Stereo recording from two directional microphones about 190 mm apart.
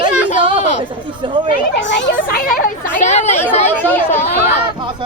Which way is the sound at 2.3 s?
50° left (ahead or behind).